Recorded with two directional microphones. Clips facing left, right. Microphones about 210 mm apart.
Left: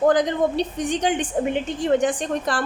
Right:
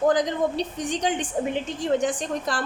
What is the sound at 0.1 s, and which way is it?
A woman's voice, 60° left (ahead or behind).